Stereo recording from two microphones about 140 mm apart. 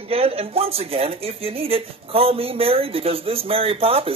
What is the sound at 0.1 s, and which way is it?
Speech, 45° right (ahead or behind).